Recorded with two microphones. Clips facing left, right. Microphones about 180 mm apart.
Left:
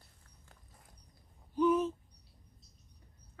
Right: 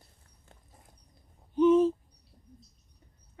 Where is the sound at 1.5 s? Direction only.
25° right (ahead or behind).